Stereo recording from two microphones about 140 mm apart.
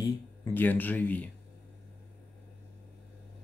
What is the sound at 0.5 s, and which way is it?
Speech, 15° left (ahead or behind).